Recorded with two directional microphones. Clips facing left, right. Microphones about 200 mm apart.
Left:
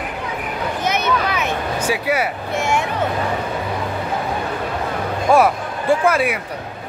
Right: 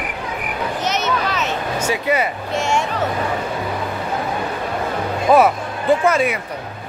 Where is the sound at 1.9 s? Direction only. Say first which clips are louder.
Right 1 dB; 10° left (ahead or behind).